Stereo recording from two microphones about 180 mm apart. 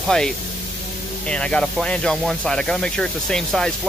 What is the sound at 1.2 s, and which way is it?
Speech, 5° left (ahead or behind).